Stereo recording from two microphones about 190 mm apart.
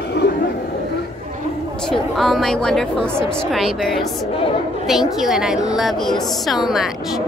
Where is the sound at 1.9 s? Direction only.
Centre (ahead or behind).